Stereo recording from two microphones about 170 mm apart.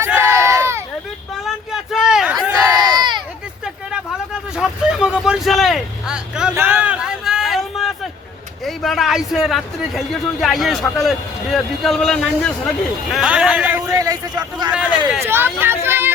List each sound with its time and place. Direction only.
0.0 s crowd: 15° right (ahead or behind)
1.5 s a sound: centre (ahead or behind)
2.5 s crowd: 25° right (ahead or behind)
4.5 s vehicle: 5° right (ahead or behind)
8.6 s speech: centre (ahead or behind)
13.9 s a man's voice: 20° right (ahead or behind)
14.7 s speech: 5° right (ahead or behind)